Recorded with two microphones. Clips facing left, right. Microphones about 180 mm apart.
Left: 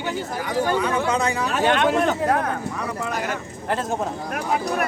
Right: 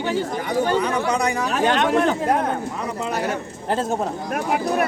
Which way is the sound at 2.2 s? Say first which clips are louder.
Right 1 dB; 20° right (ahead or behind).